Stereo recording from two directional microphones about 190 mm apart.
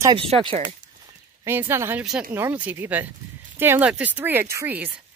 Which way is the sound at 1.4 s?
10° right (ahead or behind).